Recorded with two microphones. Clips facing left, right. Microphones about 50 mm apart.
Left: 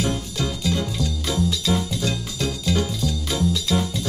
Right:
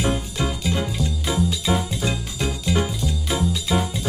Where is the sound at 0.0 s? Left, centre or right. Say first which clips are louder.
Right 1 dB; right.